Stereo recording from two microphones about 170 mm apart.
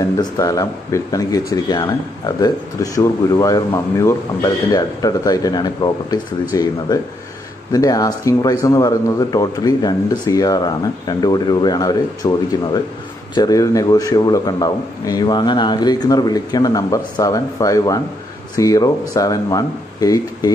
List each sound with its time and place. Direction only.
0.2 s speech: 20° left (ahead or behind)